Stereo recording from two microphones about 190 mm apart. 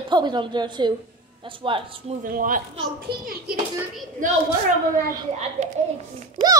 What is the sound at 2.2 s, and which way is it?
Speech, 45° right (ahead or behind).